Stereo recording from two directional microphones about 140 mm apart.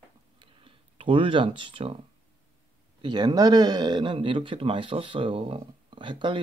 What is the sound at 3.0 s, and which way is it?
Speech, 30° right (ahead or behind).